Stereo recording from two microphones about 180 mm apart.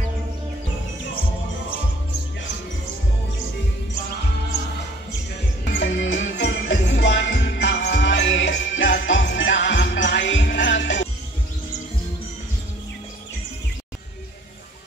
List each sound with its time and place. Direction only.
5.7 s music: 90° left